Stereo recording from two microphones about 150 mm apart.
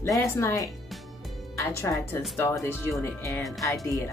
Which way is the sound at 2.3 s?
15° left (ahead or behind).